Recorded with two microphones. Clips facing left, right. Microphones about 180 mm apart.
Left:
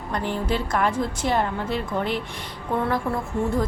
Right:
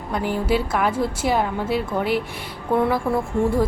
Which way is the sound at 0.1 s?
5° right (ahead or behind).